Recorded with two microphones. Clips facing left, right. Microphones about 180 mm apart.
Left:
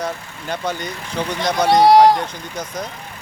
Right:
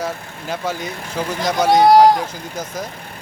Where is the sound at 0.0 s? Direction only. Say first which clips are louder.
Even; 5° right (ahead or behind).